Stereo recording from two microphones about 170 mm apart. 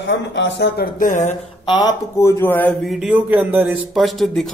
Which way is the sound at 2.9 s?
5° right (ahead or behind).